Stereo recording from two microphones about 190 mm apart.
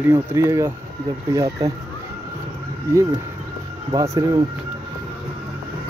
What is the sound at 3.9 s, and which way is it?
Speech, 20° right (ahead or behind).